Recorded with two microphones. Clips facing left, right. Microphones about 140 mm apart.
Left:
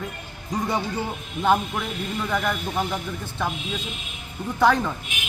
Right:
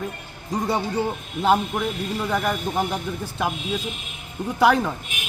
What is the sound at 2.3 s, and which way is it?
Speech, 15° right (ahead or behind).